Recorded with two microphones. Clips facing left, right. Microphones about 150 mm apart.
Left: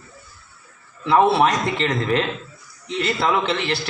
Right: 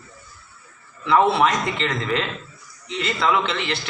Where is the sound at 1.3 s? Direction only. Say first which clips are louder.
Left 2 dB; 35° left (ahead or behind).